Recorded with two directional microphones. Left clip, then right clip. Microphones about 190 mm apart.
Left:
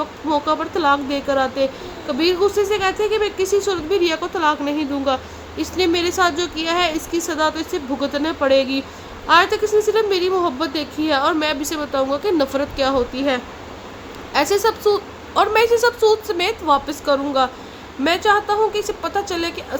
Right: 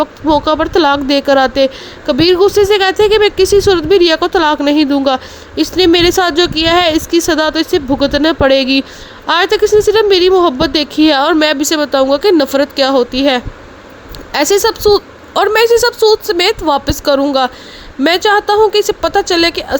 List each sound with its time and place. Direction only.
0.0 s a woman's voice: 45° right (ahead or behind)